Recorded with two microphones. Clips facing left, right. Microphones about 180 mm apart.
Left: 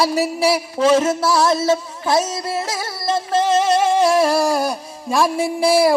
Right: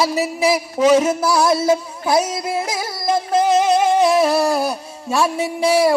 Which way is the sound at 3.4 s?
10° right (ahead or behind).